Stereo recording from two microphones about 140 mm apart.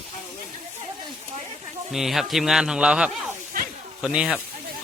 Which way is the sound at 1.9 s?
Centre (ahead or behind).